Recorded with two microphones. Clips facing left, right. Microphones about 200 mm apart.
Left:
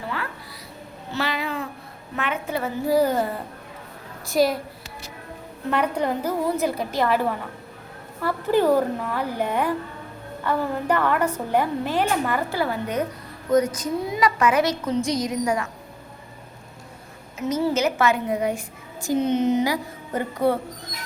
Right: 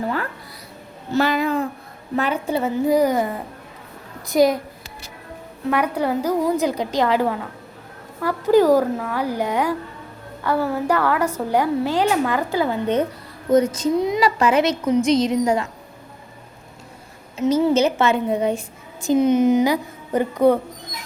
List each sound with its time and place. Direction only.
1.1 s a sound: 45° right (ahead or behind)
2.1 s a child's voice: 35° right (ahead or behind); by 4.5 s 20° right (ahead or behind)
5.7 s a woman's voice: 10° right (ahead or behind)
17.3 s a child's voice: 30° right (ahead or behind)
19.0 s a woman's voice: 15° right (ahead or behind)